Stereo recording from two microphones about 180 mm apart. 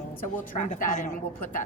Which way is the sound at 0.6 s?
45° left (ahead or behind).